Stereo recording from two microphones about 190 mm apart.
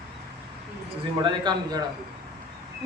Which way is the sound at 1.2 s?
20° right (ahead or behind).